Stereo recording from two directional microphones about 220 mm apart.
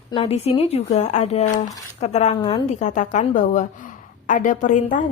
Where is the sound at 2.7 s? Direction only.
35° left (ahead or behind).